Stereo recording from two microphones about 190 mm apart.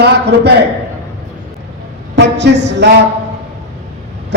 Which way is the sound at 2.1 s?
65° right (ahead or behind).